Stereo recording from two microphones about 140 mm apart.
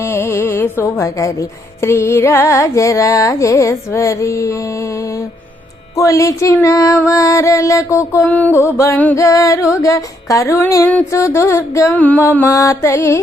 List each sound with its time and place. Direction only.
0.0 s music: 15° left (ahead or behind)
6.0 s music: 20° left (ahead or behind)